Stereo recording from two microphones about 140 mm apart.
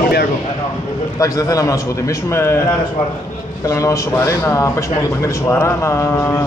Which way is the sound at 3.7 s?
20° left (ahead or behind).